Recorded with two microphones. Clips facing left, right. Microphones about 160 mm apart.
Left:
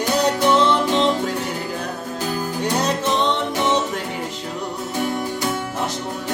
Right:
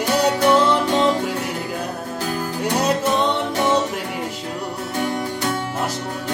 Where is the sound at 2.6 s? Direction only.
5° right (ahead or behind).